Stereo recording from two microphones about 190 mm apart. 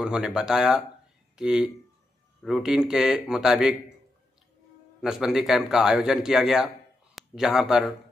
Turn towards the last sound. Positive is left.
turn(degrees=0)  # may be behind; listen again after turning